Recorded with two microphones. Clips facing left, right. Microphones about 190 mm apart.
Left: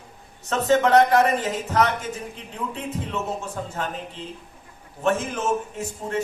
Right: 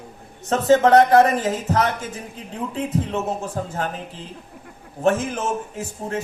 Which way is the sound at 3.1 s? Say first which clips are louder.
Right 4 dB; 35° right (ahead or behind).